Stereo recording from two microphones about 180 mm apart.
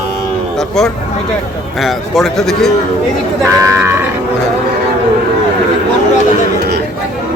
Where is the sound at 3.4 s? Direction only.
15° right (ahead or behind).